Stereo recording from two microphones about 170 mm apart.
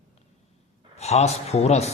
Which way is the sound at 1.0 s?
40° left (ahead or behind).